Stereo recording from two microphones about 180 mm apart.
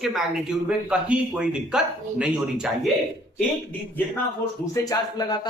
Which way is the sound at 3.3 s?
10° left (ahead or behind).